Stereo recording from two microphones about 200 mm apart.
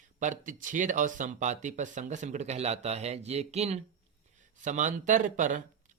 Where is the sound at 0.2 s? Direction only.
40° right (ahead or behind).